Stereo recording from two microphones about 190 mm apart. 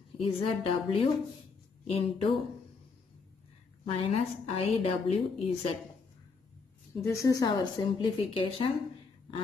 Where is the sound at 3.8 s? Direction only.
35° left (ahead or behind).